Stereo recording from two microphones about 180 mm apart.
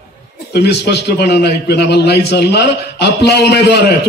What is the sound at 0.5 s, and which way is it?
A man's voice, 65° left (ahead or behind).